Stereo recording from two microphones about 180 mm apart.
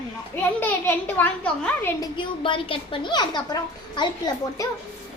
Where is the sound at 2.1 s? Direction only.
30° left (ahead or behind).